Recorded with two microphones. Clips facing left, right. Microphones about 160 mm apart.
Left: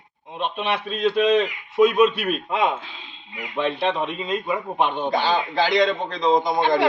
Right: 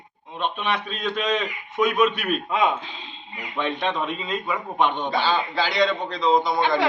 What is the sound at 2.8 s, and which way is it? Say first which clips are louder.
Speech: right 3 dB; 5° left (ahead or behind).